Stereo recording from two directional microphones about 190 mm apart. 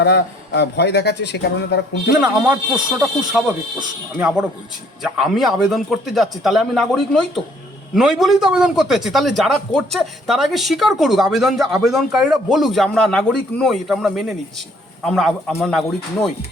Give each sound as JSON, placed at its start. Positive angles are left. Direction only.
{"t": 0.0, "sound": "a man's voice", "side_deg": 60}
{"t": 2.2, "sound": "a man's voice", "side_deg": -5}